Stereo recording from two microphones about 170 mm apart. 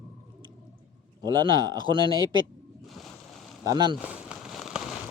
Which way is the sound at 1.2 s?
25° right (ahead or behind).